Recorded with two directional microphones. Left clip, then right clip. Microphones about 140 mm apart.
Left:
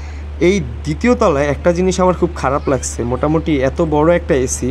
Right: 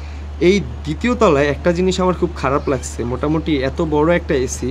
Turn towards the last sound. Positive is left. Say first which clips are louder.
# left 3 dB
turn(degrees=25)  # may be behind; listen again after turning